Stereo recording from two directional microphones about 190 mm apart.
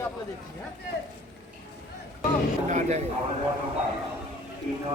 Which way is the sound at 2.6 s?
40° right (ahead or behind).